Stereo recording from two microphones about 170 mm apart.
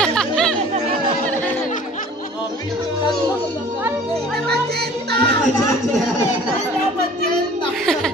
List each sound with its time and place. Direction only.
0.0 s chatter: 5° left (ahead or behind)
4.5 s music: 70° right (ahead or behind)
7.8 s a sound: 5° left (ahead or behind)